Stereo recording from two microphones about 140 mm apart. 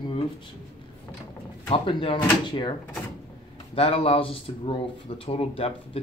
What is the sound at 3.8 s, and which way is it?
Speech, 40° left (ahead or behind).